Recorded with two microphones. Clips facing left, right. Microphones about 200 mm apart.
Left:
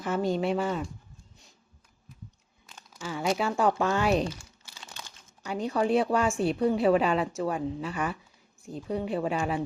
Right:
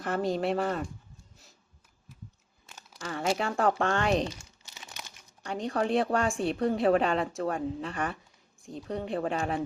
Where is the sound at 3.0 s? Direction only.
Centre (ahead or behind).